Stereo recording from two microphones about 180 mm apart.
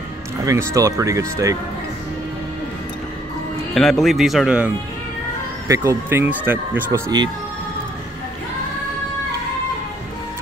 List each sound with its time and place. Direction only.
0.5 s speech: 15° right (ahead or behind)
3.7 s speech: centre (ahead or behind)